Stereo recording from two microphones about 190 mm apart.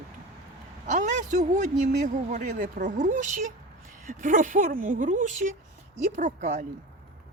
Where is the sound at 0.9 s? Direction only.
40° right (ahead or behind).